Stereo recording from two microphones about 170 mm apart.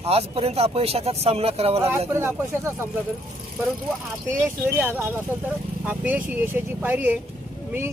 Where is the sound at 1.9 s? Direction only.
15° right (ahead or behind).